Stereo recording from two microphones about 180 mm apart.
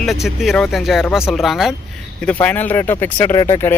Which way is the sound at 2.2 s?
10° left (ahead or behind).